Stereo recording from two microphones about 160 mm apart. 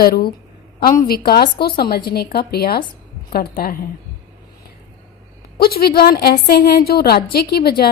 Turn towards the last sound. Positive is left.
turn(degrees=75)  # may be behind; listen again after turning